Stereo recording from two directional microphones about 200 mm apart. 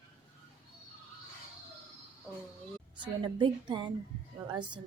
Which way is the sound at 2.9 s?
25° right (ahead or behind).